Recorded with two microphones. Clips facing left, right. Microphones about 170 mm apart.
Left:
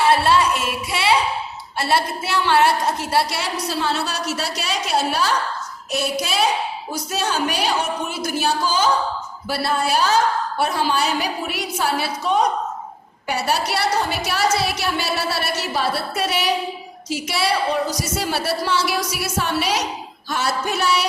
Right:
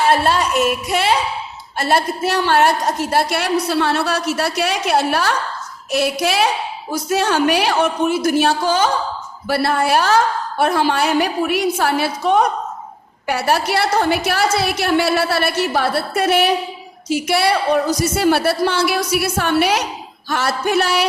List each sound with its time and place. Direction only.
0.1 s a woman's voice: 45° right (ahead or behind); by 21.1 s 60° right (ahead or behind)